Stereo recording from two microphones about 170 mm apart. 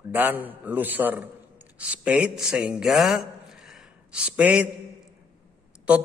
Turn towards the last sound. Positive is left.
turn(degrees=-10)  # may be behind; listen again after turning